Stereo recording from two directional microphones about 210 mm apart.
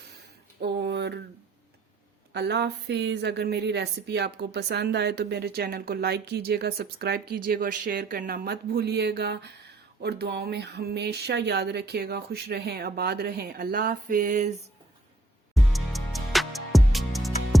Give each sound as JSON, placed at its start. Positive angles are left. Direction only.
{"t": 0.6, "sound": "a sound", "side_deg": -50}
{"t": 2.3, "sound": "a woman's voice", "side_deg": -55}
{"t": 15.7, "sound": "music", "side_deg": 0}